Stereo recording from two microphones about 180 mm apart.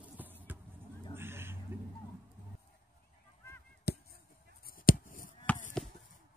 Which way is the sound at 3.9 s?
60° left (ahead or behind).